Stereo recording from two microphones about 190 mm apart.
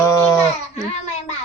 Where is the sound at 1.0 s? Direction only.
40° left (ahead or behind).